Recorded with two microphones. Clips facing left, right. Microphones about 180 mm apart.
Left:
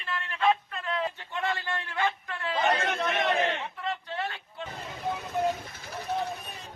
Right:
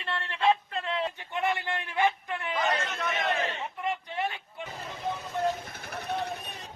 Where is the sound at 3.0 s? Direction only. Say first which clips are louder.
Left 3 dB; 65° left (ahead or behind).